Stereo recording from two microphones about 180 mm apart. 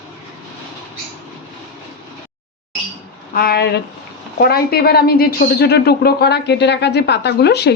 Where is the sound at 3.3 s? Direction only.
55° left (ahead or behind).